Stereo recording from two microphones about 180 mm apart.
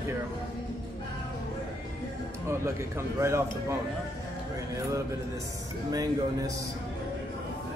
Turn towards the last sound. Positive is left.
turn(degrees=-20)  # may be behind; listen again after turning